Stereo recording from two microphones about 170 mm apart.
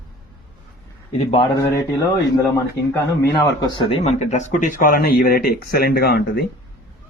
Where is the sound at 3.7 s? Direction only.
30° left (ahead or behind); by 6.4 s 70° left (ahead or behind).